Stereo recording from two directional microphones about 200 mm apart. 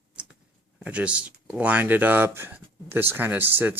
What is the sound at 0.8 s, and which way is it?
Speech, 5° right (ahead or behind).